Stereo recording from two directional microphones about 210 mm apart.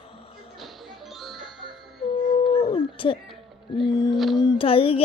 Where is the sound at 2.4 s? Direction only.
25° left (ahead or behind).